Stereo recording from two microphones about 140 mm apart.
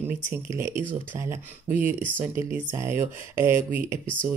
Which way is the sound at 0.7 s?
65° right (ahead or behind).